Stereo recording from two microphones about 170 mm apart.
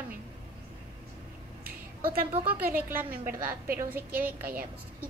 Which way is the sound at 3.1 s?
55° right (ahead or behind).